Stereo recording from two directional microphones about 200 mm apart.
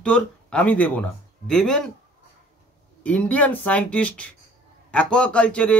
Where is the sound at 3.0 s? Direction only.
5° left (ahead or behind).